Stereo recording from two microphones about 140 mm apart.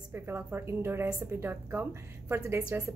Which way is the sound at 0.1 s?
15° right (ahead or behind).